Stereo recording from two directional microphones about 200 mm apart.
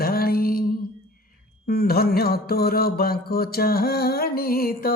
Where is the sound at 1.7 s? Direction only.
50° left (ahead or behind).